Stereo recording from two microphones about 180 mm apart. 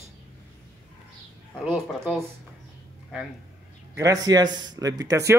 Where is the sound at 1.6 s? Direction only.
Centre (ahead or behind).